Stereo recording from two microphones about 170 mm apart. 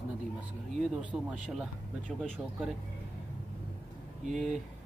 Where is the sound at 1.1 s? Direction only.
15° right (ahead or behind).